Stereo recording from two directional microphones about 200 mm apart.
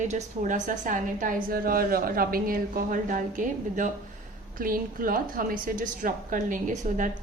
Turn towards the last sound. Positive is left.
turn(degrees=-40)  # may be behind; listen again after turning